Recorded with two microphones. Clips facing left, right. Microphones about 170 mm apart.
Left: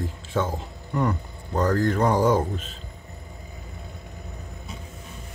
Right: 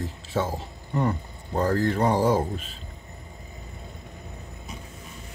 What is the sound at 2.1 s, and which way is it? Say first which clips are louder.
Speech: left 1 dB; 30° right (ahead or behind).